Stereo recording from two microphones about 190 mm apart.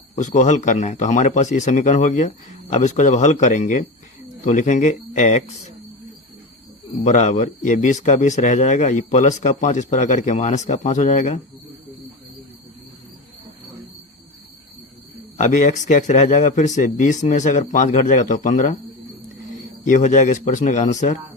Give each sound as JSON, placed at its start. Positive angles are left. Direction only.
{"t": 0.2, "sound": "speech", "side_deg": 40}
{"t": 7.0, "sound": "speech", "side_deg": 40}
{"t": 15.4, "sound": "speech", "side_deg": 40}
{"t": 19.8, "sound": "speech", "side_deg": 40}